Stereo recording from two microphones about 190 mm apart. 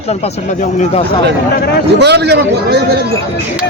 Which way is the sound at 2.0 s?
65° right (ahead or behind).